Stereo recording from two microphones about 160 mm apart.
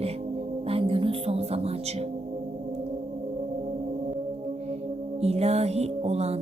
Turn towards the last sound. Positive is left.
turn(degrees=-40)  # may be behind; listen again after turning